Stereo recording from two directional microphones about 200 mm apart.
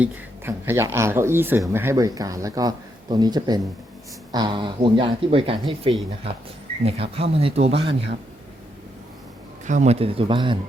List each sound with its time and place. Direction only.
0.0 s speech: 10° right (ahead or behind); by 7.8 s 30° right (ahead or behind)
9.6 s speech: 35° right (ahead or behind)